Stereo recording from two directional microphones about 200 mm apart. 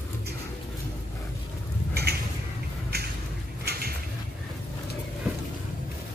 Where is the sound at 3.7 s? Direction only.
50° right (ahead or behind).